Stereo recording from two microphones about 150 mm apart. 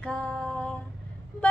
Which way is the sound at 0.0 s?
5° left (ahead or behind).